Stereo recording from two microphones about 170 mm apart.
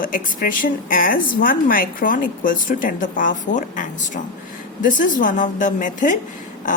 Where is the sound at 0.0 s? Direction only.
55° left (ahead or behind).